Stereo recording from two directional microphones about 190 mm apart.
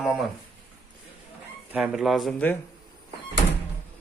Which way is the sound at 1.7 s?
5° right (ahead or behind).